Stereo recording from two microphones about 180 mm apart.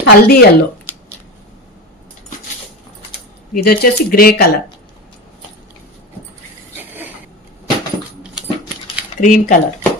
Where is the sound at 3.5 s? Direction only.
55° left (ahead or behind).